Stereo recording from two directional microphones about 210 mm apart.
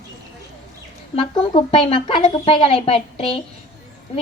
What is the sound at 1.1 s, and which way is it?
A woman's voice, 25° left (ahead or behind).